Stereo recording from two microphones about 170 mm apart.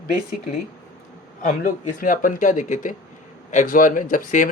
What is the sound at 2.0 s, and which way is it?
Speech, 55° left (ahead or behind).